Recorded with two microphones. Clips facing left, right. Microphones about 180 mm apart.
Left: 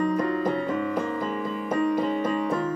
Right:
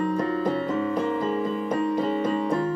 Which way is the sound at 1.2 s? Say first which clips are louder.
Right 3 dB; 35° right (ahead or behind).